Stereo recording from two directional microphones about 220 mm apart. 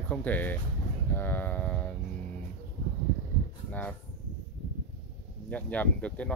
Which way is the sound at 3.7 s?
10° left (ahead or behind).